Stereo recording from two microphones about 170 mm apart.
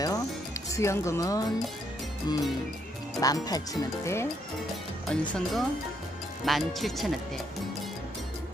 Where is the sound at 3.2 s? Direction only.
20° left (ahead or behind).